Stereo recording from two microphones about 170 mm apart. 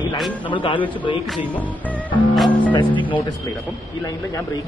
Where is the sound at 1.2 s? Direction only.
Centre (ahead or behind).